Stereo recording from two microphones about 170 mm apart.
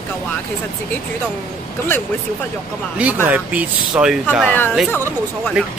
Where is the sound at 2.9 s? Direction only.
10° right (ahead or behind).